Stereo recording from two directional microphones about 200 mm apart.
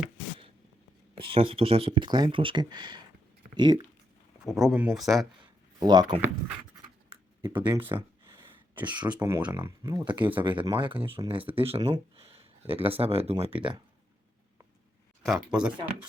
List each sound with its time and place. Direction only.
1.1 s speech: 25° right (ahead or behind)
4.4 s speech: 5° right (ahead or behind)
5.8 s speech: 20° right (ahead or behind)
7.1 s a sound: 25° right (ahead or behind)
9.0 s speech: 5° right (ahead or behind)
10.3 s speech: 25° right (ahead or behind)
15.4 s speech: 5° right (ahead or behind)